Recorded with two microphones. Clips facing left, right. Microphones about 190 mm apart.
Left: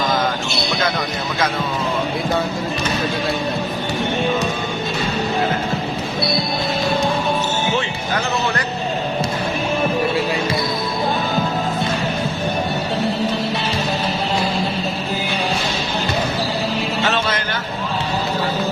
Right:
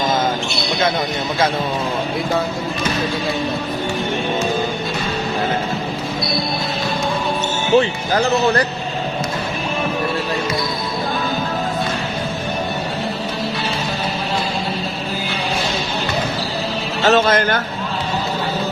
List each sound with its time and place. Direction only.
7.8 s speech: 35° right (ahead or behind)
17.0 s speech: 45° right (ahead or behind)